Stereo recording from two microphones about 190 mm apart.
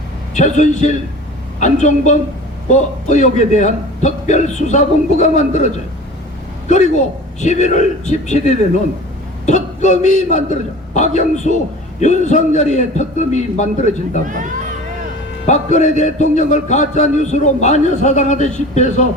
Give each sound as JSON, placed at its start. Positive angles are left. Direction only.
{"t": 0.3, "sound": "a man's voice", "side_deg": 40}
{"t": 6.7, "sound": "a man's voice", "side_deg": 40}
{"t": 15.4, "sound": "a man's voice", "side_deg": 40}